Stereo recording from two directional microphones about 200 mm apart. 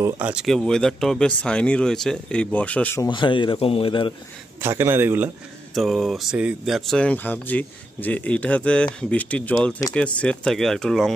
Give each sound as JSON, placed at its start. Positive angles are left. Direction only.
{"t": 0.0, "sound": "speech", "side_deg": -5}
{"t": 3.1, "sound": "speech", "side_deg": 25}
{"t": 4.6, "sound": "a man's voice", "side_deg": -10}
{"t": 5.8, "sound": "speech", "side_deg": 0}